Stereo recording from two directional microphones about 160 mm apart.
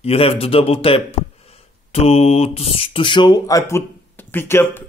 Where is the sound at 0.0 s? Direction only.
35° left (ahead or behind).